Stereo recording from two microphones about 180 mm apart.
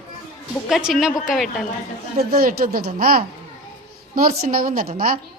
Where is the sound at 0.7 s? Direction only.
Centre (ahead or behind).